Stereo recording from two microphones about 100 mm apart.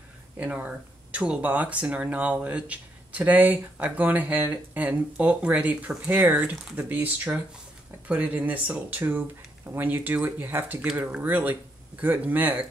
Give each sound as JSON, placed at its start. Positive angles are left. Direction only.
{"t": 0.4, "sound": "speech", "side_deg": -15}